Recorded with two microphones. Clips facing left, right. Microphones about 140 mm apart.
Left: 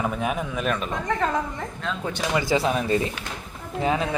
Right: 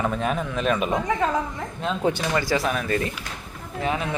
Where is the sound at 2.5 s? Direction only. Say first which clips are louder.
Left 2 dB; 25° left (ahead or behind).